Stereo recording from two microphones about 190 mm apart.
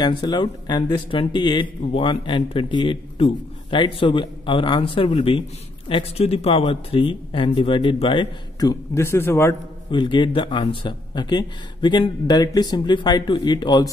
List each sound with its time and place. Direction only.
0.0 s speech: 25° left (ahead or behind)
9.8 s speech: 25° left (ahead or behind)